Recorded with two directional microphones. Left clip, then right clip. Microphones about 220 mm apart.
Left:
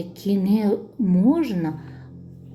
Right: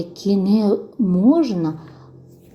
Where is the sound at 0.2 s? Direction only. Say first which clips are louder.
Right 4 dB; 10° right (ahead or behind).